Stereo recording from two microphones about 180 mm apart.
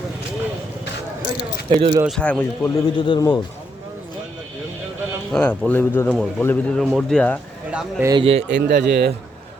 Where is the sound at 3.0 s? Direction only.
25° left (ahead or behind).